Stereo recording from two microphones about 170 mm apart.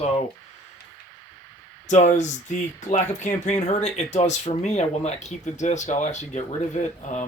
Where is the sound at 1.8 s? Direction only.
45° left (ahead or behind).